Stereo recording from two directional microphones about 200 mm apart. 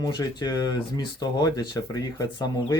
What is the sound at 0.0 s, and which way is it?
Speech, 20° left (ahead or behind).